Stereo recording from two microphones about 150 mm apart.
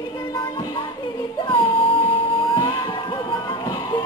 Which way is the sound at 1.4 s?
35° left (ahead or behind).